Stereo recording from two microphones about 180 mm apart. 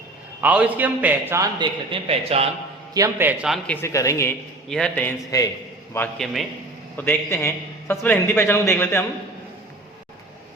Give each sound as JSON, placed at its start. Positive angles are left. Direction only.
{"t": 0.4, "sound": "a man's voice", "side_deg": -10}
{"t": 1.5, "sound": "speech", "side_deg": -25}
{"t": 2.9, "sound": "a man's voice", "side_deg": -15}
{"t": 3.5, "sound": "a man's voice", "side_deg": 10}
{"t": 5.3, "sound": "a man's voice", "side_deg": 20}